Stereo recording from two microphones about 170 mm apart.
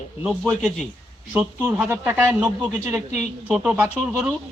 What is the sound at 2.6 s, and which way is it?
Speech, 20° right (ahead or behind).